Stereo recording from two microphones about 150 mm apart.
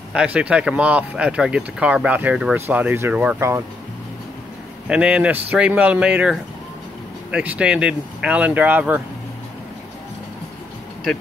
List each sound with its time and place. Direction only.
0.1 s speech: 5° right (ahead or behind)
4.8 s speech: 5° right (ahead or behind)